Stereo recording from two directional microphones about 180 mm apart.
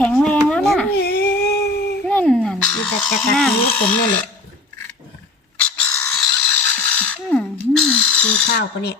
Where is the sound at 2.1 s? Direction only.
5° left (ahead or behind).